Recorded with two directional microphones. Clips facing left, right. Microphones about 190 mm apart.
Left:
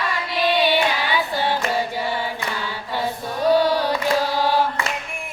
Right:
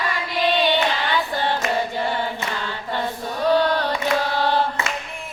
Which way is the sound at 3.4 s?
10° left (ahead or behind).